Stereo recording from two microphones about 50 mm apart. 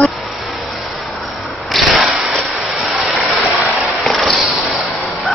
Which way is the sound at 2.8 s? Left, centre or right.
Right.